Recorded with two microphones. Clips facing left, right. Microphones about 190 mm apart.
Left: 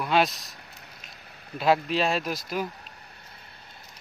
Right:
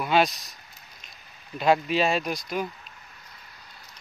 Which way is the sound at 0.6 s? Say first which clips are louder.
Left 4 dB; 60° left (ahead or behind).